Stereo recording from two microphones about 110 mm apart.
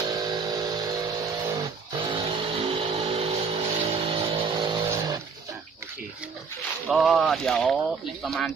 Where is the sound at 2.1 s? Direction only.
55° right (ahead or behind).